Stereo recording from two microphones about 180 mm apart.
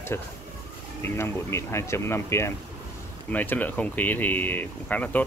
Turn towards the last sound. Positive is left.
turn(degrees=10)  # may be behind; listen again after turning